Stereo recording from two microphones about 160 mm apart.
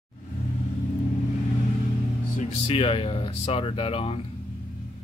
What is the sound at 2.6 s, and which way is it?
Speech, 35° left (ahead or behind).